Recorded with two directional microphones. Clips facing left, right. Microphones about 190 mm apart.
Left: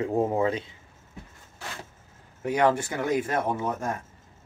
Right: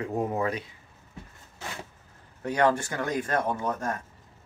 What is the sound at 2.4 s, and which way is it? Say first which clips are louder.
Speech: left 1 dB; 15° left (ahead or behind).